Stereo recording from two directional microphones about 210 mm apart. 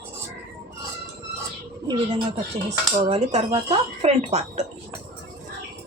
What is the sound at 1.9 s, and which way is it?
Speech, 25° right (ahead or behind).